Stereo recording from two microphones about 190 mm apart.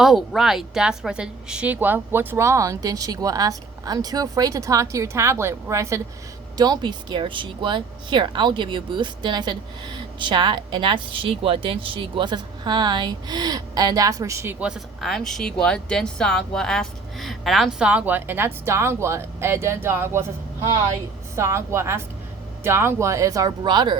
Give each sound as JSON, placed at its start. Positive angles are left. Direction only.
{"t": 0.0, "sound": "speech", "side_deg": 0}
{"t": 21.3, "sound": "speech", "side_deg": -15}